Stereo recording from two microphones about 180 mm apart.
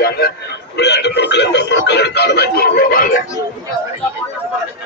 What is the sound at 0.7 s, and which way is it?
Speech, 70° left (ahead or behind).